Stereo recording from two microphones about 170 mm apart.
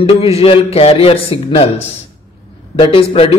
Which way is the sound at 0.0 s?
35° left (ahead or behind).